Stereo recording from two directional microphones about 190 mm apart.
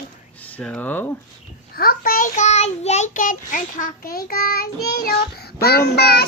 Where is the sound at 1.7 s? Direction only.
50° left (ahead or behind).